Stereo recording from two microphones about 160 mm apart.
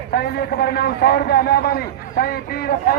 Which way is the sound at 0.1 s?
75° left (ahead or behind).